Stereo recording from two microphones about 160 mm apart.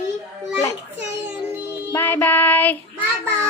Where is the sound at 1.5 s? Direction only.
15° right (ahead or behind).